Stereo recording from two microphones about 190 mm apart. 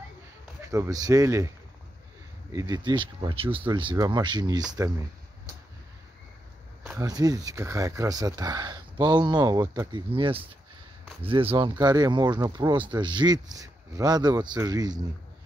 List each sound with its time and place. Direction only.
0.7 s speech: 15° right (ahead or behind)
2.5 s speech: 20° right (ahead or behind)
7.0 s speech: 20° right (ahead or behind)